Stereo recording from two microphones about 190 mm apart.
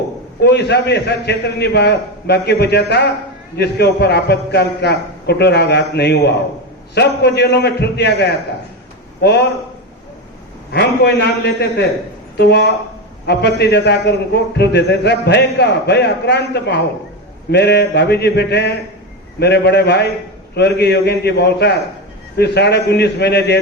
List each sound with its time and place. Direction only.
0.4 s a man's voice: 60° left (ahead or behind)
10.7 s a man's voice: 60° left (ahead or behind)